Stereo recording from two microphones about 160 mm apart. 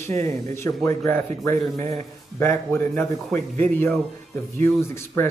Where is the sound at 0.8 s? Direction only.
20° left (ahead or behind).